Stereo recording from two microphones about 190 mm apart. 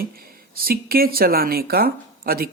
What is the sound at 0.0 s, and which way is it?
Speech, 50° right (ahead or behind).